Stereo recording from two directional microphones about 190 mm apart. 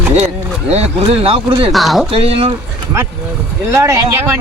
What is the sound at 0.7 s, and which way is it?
Speech, 30° right (ahead or behind).